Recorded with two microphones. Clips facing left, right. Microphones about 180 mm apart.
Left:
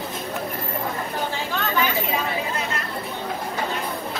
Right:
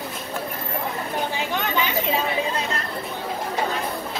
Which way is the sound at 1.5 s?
20° right (ahead or behind).